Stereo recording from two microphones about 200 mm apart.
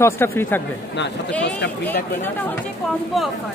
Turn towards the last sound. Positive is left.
turn(degrees=0)  # may be behind; listen again after turning